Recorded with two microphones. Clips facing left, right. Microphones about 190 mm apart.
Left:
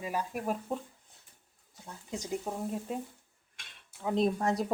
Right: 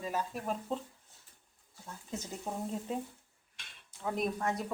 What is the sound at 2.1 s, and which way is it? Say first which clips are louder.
Speech: left 4 dB; 15° left (ahead or behind).